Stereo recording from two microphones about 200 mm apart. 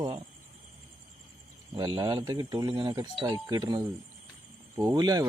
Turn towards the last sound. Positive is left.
turn(degrees=-20)  # may be behind; listen again after turning